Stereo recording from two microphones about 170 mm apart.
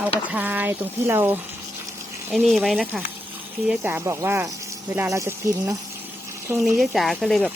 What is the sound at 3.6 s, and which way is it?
Speech, 10° right (ahead or behind).